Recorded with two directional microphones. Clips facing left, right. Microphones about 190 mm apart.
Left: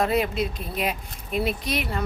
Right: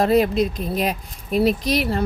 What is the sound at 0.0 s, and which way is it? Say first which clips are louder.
Speech: right 6 dB; 35° right (ahead or behind).